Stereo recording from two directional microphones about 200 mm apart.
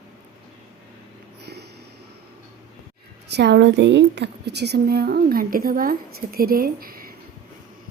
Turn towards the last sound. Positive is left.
turn(degrees=-45)  # may be behind; listen again after turning